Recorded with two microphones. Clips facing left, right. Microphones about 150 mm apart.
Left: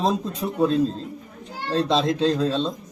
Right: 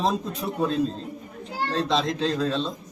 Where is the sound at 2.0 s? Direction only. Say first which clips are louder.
Left 4 dB; 30° left (ahead or behind).